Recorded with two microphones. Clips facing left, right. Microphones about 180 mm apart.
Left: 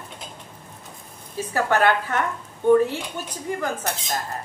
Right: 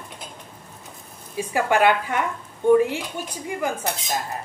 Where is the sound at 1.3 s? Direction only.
15° right (ahead or behind).